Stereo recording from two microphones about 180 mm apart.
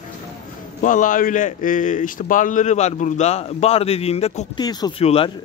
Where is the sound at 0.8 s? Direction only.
45° left (ahead or behind).